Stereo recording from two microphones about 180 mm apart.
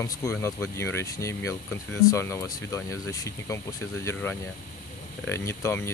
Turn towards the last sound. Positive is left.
turn(degrees=15)  # may be behind; listen again after turning